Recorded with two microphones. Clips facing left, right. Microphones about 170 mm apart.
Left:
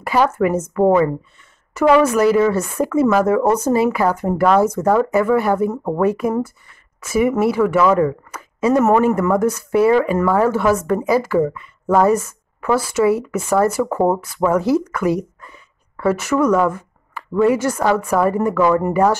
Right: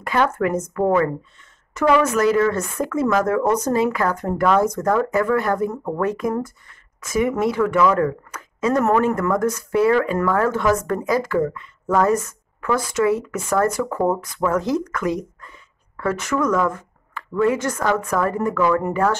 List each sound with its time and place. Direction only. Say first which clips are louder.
0.0 s speech: left 3 dB; 5° left (ahead or behind)
13.8 s speech: left 4 dB; 25° left (ahead or behind)
14.2 s speech: left 4 dB; 10° left (ahead or behind)